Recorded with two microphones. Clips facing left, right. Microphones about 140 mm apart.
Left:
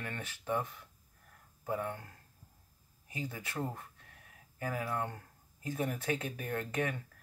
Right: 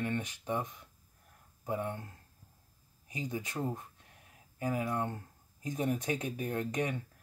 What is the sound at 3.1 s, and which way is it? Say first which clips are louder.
Speech: right 3 dB; 20° right (ahead or behind).